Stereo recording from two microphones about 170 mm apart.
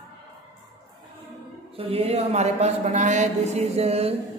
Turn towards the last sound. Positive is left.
turn(degrees=-35)  # may be behind; listen again after turning